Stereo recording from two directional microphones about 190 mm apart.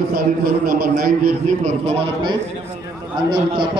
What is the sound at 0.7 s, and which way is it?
A man's voice, 50° right (ahead or behind).